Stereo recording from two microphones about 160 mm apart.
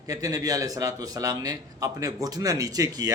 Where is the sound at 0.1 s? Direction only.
20° right (ahead or behind).